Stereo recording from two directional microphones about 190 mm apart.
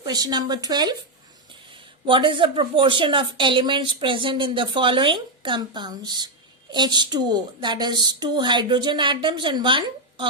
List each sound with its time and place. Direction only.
0.0 s a woman's voice: 20° right (ahead or behind)